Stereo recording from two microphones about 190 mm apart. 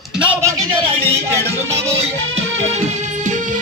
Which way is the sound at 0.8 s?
30° right (ahead or behind).